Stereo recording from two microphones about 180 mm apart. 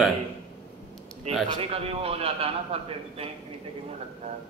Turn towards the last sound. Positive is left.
turn(degrees=-35)  # may be behind; listen again after turning